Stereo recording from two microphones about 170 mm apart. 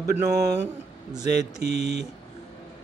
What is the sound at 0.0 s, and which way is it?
Speech, 20° right (ahead or behind).